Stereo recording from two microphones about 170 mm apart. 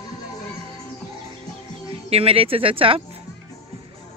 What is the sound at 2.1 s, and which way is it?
Speech, 35° right (ahead or behind).